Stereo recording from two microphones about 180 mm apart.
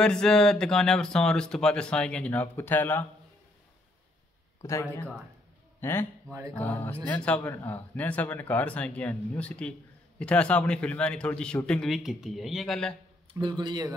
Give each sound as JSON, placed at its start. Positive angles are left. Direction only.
{"t": 0.0, "sound": "speech", "side_deg": 5}
{"t": 4.6, "sound": "speech", "side_deg": 15}
{"t": 13.3, "sound": "a man's voice", "side_deg": -25}